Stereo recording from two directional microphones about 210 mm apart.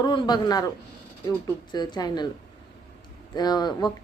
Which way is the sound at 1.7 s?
20° left (ahead or behind).